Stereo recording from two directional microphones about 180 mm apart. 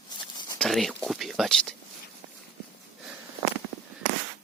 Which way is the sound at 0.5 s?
Centre (ahead or behind).